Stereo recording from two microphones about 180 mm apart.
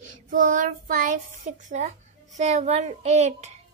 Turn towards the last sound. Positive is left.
turn(degrees=-40)  # may be behind; listen again after turning